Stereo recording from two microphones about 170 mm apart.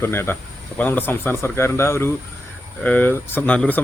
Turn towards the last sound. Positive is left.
turn(degrees=10)  # may be behind; listen again after turning